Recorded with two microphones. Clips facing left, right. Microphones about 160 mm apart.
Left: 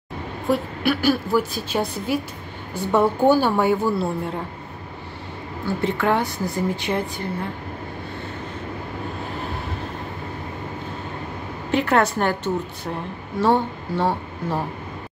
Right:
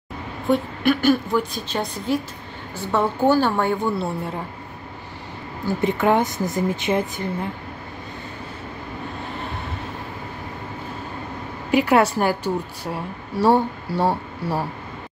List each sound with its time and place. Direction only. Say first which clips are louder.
0.5 s a woman's voice: right 2 dB; 5° left (ahead or behind)
5.8 s speech: right 3 dB; 15° right (ahead or behind)
11.7 s a woman's voice: right 2 dB; 10° right (ahead or behind)